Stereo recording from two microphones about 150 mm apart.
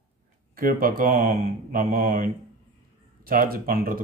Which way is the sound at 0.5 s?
75° right (ahead or behind).